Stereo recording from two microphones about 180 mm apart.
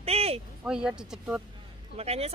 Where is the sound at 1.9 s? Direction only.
35° right (ahead or behind).